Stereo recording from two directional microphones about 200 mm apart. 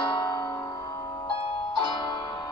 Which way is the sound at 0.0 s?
20° left (ahead or behind).